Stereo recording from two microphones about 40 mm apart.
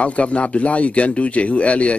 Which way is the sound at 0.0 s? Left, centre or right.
Left.